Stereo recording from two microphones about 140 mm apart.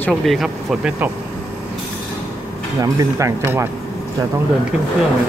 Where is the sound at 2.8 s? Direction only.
25° right (ahead or behind).